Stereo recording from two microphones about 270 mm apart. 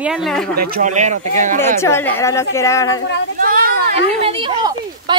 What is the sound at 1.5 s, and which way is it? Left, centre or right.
A woman's voice, centre.